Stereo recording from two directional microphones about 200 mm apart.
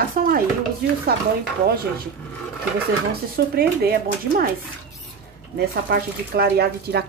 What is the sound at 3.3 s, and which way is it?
Speech, 50° right (ahead or behind).